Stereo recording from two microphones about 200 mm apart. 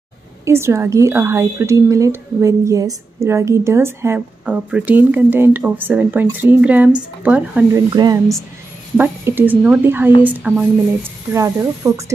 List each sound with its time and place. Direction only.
0.5 s a woman's voice: 15° right (ahead or behind)
7.9 s a woman's voice: 20° right (ahead or behind)